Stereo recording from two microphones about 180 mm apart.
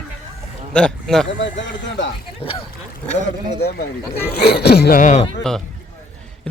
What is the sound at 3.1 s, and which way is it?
Speech, 40° left (ahead or behind).